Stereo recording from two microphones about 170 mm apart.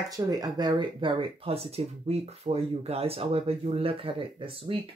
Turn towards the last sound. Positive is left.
turn(degrees=-30)  # may be behind; listen again after turning